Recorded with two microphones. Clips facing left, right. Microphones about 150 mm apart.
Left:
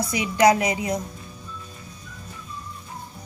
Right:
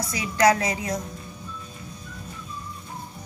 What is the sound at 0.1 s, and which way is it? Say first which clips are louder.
Speech: left 2 dB; 20° left (ahead or behind).